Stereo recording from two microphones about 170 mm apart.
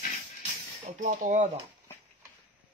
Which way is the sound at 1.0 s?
45° right (ahead or behind).